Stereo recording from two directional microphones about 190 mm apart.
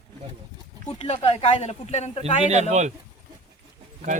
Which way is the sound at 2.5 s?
35° right (ahead or behind).